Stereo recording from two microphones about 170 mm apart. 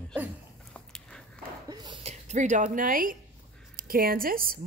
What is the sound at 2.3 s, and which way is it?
A woman's voice, 45° right (ahead or behind).